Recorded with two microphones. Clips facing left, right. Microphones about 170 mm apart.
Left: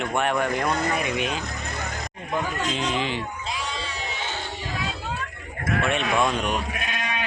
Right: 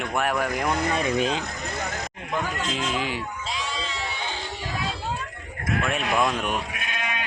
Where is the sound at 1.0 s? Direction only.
35° right (ahead or behind).